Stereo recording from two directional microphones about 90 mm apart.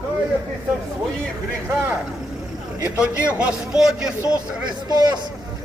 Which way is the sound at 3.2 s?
15° right (ahead or behind).